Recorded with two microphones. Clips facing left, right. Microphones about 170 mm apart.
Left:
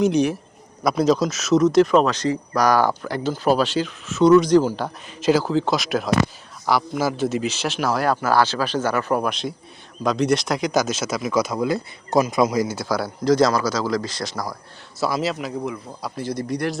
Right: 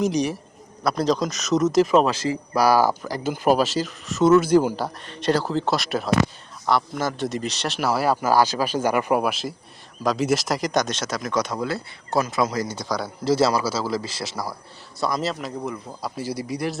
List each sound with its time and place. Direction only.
0.0 s speech: centre (ahead or behind)
5.0 s speech: 5° left (ahead or behind)
13.2 s speech: 5° right (ahead or behind)